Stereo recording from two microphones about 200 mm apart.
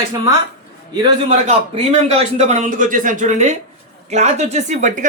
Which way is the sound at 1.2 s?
30° right (ahead or behind).